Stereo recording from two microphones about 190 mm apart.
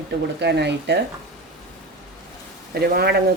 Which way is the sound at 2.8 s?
55° right (ahead or behind).